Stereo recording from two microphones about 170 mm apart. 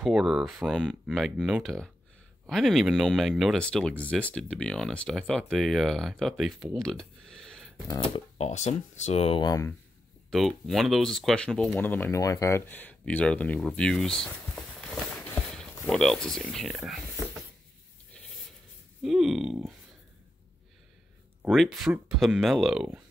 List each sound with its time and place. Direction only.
0.0 s speech: 5° right (ahead or behind)
8.4 s speech: 40° left (ahead or behind)
9.4 s speech: 20° left (ahead or behind)
10.3 s speech: centre (ahead or behind)
19.0 s speech: centre (ahead or behind)
21.4 s speech: centre (ahead or behind)